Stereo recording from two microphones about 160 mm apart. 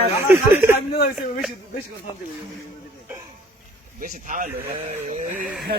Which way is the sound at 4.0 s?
55° right (ahead or behind).